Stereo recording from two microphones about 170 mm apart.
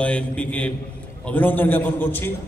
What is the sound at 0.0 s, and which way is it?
A man's voice, 5° left (ahead or behind).